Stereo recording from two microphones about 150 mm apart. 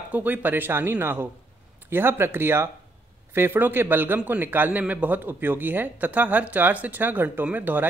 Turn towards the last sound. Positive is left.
turn(degrees=-10)  # may be behind; listen again after turning